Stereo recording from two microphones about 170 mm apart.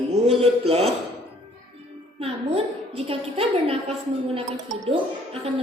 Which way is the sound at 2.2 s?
35° right (ahead or behind).